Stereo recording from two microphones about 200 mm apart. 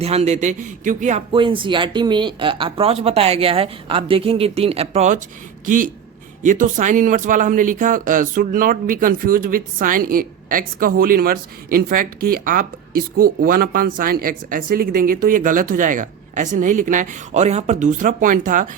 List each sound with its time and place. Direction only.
0.0 s a man's voice: 30° right (ahead or behind)
6.4 s speech: 40° right (ahead or behind)